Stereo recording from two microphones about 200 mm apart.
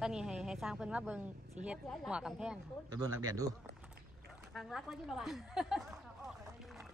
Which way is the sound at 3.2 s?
15° right (ahead or behind).